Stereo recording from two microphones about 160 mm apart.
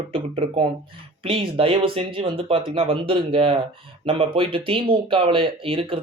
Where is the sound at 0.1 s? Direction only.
35° right (ahead or behind).